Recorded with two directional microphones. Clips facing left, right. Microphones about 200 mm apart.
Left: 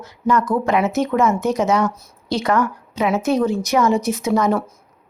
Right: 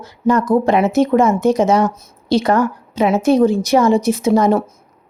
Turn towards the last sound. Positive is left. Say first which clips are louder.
# right 5 dB
turn(degrees=-30)  # may be behind; listen again after turning